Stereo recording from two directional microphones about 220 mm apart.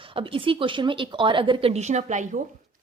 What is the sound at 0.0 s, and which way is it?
A woman's voice, 25° right (ahead or behind).